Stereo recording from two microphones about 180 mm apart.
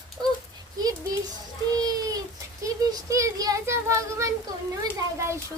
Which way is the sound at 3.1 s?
20° right (ahead or behind).